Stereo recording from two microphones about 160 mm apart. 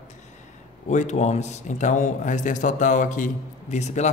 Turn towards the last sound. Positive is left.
turn(degrees=45)  # may be behind; listen again after turning